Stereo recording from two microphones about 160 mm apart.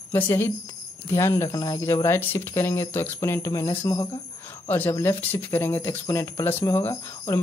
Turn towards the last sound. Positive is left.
turn(degrees=15)  # may be behind; listen again after turning